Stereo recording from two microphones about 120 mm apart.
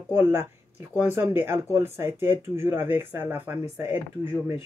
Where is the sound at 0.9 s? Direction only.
20° right (ahead or behind).